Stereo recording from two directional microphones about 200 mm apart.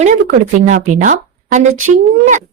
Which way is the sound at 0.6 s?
40° right (ahead or behind).